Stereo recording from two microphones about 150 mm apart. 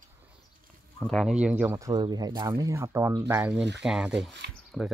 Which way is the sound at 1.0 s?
Centre (ahead or behind).